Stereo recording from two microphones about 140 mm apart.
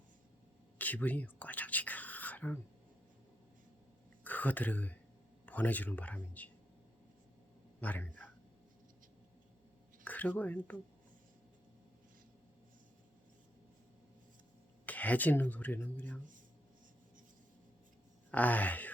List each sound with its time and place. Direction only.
0.8 s a sound: 10° left (ahead or behind)
4.2 s speech: 10° left (ahead or behind)
7.8 s a man's voice: 10° left (ahead or behind)
10.0 s speech: 10° left (ahead or behind)
14.8 s speech: 10° left (ahead or behind)
18.3 s speech: 10° left (ahead or behind)